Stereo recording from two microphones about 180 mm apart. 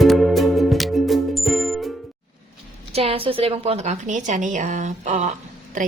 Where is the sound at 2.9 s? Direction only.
30° right (ahead or behind).